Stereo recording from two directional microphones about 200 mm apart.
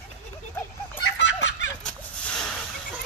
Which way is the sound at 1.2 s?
65° left (ahead or behind).